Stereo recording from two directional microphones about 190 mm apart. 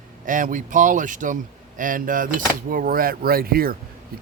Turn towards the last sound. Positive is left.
turn(degrees=-50)  # may be behind; listen again after turning